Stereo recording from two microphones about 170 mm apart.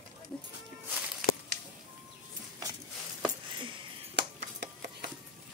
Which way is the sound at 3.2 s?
30° right (ahead or behind).